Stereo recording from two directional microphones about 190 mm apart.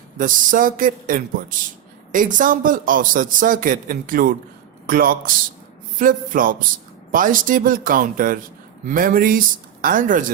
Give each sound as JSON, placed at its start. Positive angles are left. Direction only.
{"t": 0.2, "sound": "a man's voice", "side_deg": -45}